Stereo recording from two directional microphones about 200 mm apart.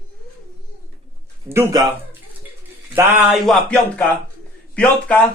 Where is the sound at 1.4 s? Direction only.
10° right (ahead or behind).